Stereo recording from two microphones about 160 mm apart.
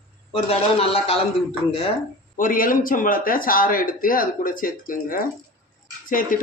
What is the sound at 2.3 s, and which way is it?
Speech, 60° left (ahead or behind).